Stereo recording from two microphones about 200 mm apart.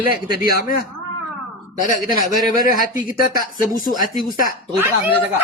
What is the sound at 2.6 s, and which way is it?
Speech, 40° left (ahead or behind).